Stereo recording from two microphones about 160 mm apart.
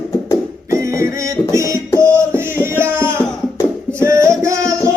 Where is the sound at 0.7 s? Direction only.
20° right (ahead or behind).